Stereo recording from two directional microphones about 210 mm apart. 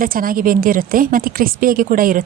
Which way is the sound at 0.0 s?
40° right (ahead or behind).